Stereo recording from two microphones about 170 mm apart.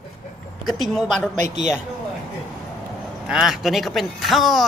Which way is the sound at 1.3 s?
45° right (ahead or behind).